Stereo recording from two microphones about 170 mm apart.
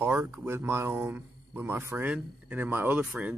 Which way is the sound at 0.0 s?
10° right (ahead or behind).